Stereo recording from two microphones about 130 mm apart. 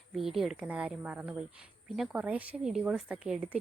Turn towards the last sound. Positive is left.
turn(degrees=-10)  # may be behind; listen again after turning